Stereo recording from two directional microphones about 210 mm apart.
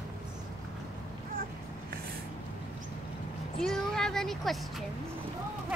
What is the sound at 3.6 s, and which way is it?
Speech, 5° left (ahead or behind).